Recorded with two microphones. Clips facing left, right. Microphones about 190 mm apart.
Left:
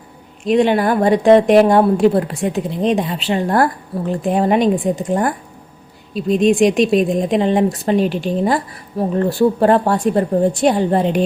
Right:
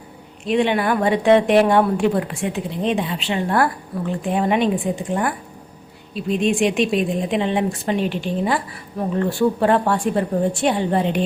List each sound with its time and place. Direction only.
0.4 s a woman's voice: 40° left (ahead or behind)